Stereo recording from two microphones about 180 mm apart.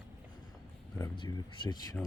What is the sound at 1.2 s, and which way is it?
Speech, 25° left (ahead or behind).